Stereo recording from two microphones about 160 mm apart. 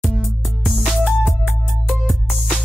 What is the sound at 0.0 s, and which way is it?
Music, centre (ahead or behind).